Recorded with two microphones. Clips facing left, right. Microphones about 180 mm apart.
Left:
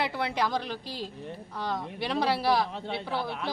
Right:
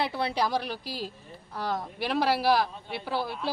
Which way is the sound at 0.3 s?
10° right (ahead or behind).